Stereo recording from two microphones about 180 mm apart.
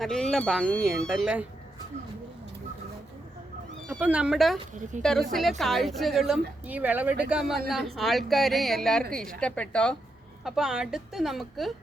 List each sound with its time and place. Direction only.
0.0 s a woman's voice: centre (ahead or behind)
4.0 s a woman's voice: 5° right (ahead or behind)
4.7 s a woman's voice: 45° right (ahead or behind)
5.3 s a woman's voice: centre (ahead or behind)